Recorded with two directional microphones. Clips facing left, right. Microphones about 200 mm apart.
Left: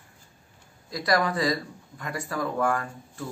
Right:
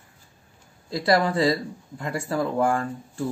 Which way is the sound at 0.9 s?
25° right (ahead or behind).